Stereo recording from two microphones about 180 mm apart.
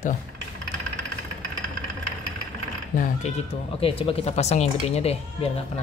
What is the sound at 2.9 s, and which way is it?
Speech, 50° left (ahead or behind).